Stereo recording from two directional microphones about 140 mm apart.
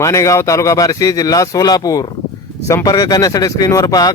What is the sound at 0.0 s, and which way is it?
Speech, 20° left (ahead or behind).